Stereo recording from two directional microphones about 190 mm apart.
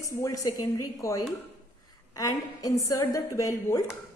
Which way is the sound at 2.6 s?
20° left (ahead or behind).